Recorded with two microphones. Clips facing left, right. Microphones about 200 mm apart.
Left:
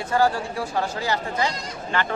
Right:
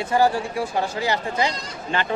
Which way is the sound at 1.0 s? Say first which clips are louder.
Right 2 dB; 20° right (ahead or behind).